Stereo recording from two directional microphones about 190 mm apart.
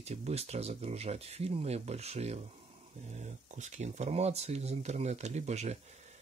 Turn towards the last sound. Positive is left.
turn(degrees=-35)  # may be behind; listen again after turning